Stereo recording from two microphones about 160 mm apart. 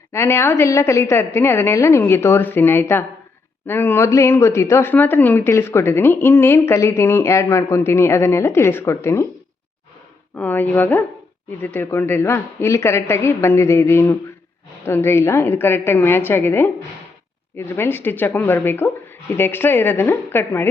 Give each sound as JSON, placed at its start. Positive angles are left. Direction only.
{"t": 0.1, "sound": "speech", "side_deg": 15}
{"t": 10.3, "sound": "speech", "side_deg": 10}